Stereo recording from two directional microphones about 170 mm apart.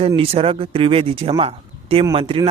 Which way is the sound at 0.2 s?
35° right (ahead or behind).